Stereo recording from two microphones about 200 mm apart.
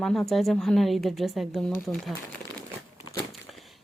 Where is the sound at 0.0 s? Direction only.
Centre (ahead or behind).